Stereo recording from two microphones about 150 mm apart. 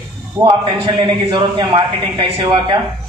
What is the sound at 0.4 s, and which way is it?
A man's voice, 30° right (ahead or behind).